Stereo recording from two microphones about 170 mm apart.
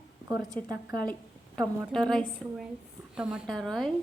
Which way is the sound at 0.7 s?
20° right (ahead or behind).